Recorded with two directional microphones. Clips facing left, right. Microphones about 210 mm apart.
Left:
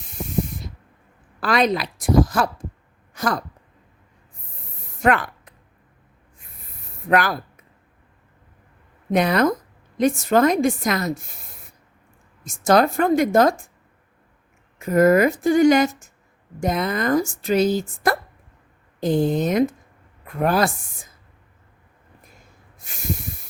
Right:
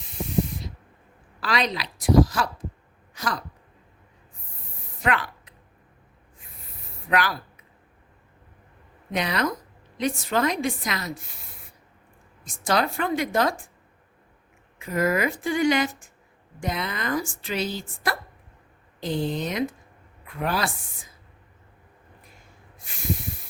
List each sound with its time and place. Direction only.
1.4 s speech: 50° left (ahead or behind)
5.0 s a sound: 50° left (ahead or behind)
7.1 s speech: 50° left (ahead or behind)
9.1 s speech: 50° left (ahead or behind)
12.5 s speech: 45° left (ahead or behind)
14.8 s speech: 45° left (ahead or behind)